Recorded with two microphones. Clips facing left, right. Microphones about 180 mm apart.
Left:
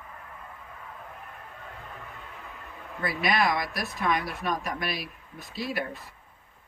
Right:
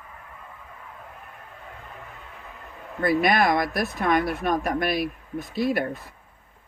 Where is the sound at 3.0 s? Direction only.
50° right (ahead or behind).